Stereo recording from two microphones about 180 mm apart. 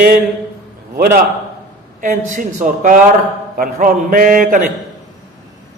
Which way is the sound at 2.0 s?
45° right (ahead or behind).